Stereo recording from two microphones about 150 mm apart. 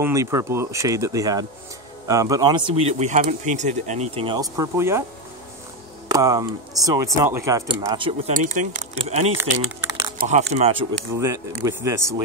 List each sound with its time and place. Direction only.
0.0 s speech: 20° right (ahead or behind)
2.7 s speech: 45° right (ahead or behind)
4.4 s speech: 20° right (ahead or behind)
6.1 s speech: 25° right (ahead or behind)
8.3 s speech: 60° right (ahead or behind)
8.9 s speech: 40° right (ahead or behind)
10.1 s speech: 55° right (ahead or behind)
11.1 s speech: 20° right (ahead or behind)